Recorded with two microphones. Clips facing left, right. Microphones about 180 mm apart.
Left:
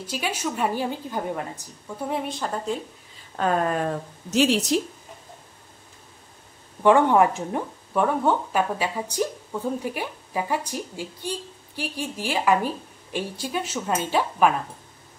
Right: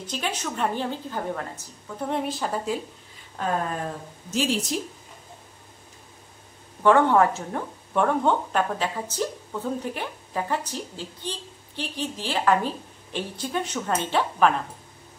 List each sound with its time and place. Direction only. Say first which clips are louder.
0.0 s a woman's voice: left 2 dB; 10° left (ahead or behind)
2.0 s a woman's voice: right 1 dB; centre (ahead or behind)
3.3 s a woman's voice: left 4 dB; 75° left (ahead or behind)
6.8 s a woman's voice: left 1 dB; 15° left (ahead or behind)